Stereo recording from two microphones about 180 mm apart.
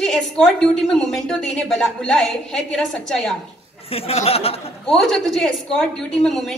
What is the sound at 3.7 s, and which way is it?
Speech, 35° left (ahead or behind).